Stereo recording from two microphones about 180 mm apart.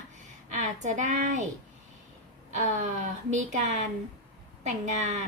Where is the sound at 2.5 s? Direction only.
40° right (ahead or behind).